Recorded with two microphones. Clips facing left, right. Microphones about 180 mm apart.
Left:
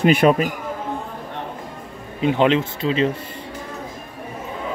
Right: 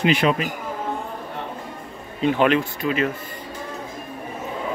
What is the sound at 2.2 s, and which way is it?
Speech, 20° left (ahead or behind).